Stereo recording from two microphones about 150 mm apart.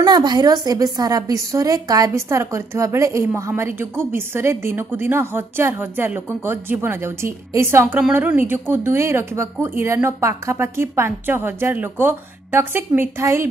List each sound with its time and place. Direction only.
0.0 s a woman's voice: 30° right (ahead or behind)